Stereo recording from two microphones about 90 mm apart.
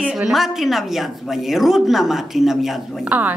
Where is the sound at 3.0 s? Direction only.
20° right (ahead or behind).